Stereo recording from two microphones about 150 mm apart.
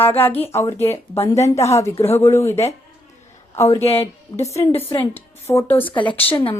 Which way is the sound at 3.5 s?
20° left (ahead or behind).